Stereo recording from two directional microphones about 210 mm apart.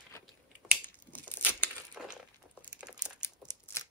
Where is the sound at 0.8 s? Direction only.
10° left (ahead or behind).